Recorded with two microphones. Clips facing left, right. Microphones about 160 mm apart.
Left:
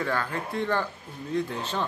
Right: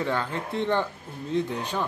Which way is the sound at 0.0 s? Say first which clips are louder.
Right 1 dB; 20° right (ahead or behind).